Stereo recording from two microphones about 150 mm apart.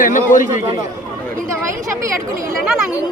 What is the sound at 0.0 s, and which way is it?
Speech, 60° left (ahead or behind).